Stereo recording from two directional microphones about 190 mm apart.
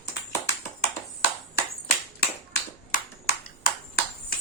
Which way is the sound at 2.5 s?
50° left (ahead or behind).